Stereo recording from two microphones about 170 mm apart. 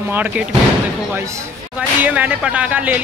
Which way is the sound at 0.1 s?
10° right (ahead or behind).